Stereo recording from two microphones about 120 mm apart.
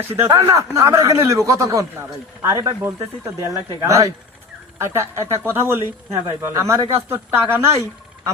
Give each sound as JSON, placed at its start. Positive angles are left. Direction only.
{"t": 0.3, "sound": "speech", "side_deg": -30}